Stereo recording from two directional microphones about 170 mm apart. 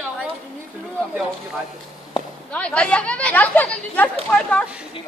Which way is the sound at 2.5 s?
5° left (ahead or behind).